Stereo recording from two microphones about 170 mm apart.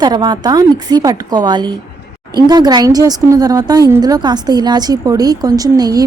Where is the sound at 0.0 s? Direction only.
25° right (ahead or behind).